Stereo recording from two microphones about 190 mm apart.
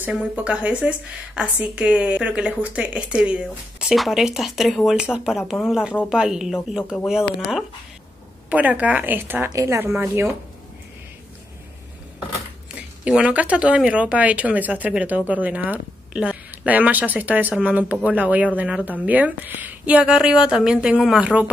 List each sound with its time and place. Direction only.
0.0 s a woman's voice: 5° right (ahead or behind)
6.8 s speech: 10° left (ahead or behind)
7.1 s a woman's voice: centre (ahead or behind)
13.0 s speech: 5° right (ahead or behind)